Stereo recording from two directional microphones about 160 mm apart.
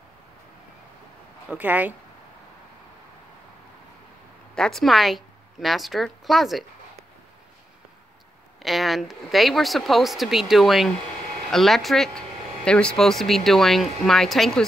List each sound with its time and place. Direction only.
1.5 s speech: 10° right (ahead or behind)
4.6 s a woman's voice: centre (ahead or behind)
8.6 s speech: centre (ahead or behind)